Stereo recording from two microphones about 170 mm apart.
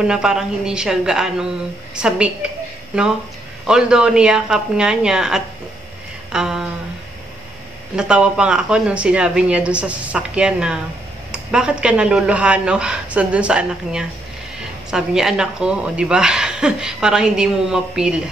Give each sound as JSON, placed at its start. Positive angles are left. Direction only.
{"t": 0.0, "sound": "a woman's voice", "side_deg": -5}
{"t": 3.6, "sound": "a woman's voice", "side_deg": -5}
{"t": 7.9, "sound": "a woman's voice", "side_deg": -5}